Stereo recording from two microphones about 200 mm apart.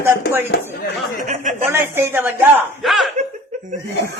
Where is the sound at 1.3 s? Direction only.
40° right (ahead or behind).